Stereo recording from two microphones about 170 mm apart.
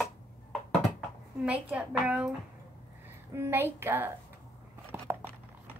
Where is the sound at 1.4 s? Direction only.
5° right (ahead or behind).